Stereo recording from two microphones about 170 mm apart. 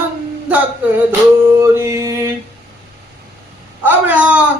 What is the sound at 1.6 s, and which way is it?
Music, 15° right (ahead or behind).